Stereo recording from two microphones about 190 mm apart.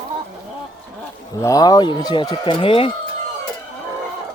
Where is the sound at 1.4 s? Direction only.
20° left (ahead or behind).